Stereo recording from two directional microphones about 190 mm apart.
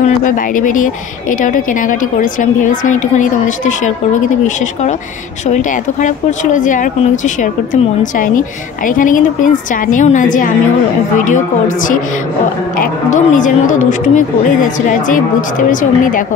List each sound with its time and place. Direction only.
0.0 s speech: 45° left (ahead or behind)
5.5 s speech: 40° left (ahead or behind)